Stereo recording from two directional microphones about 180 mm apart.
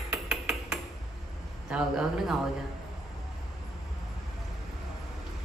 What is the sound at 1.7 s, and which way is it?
Speech, 5° right (ahead or behind).